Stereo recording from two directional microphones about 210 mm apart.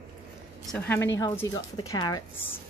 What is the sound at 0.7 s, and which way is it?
A woman's voice, 10° left (ahead or behind).